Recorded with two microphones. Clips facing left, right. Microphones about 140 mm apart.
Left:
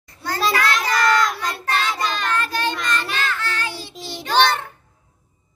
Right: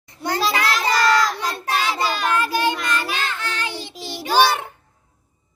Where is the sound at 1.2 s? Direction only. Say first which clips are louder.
Even; 5° right (ahead or behind).